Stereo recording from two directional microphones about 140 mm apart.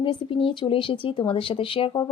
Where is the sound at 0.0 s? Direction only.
40° left (ahead or behind).